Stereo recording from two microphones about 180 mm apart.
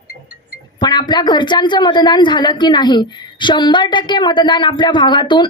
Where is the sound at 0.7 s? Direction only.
25° left (ahead or behind).